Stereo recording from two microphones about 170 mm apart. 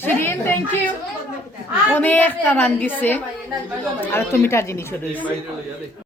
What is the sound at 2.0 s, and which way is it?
A woman's voice, 10° left (ahead or behind).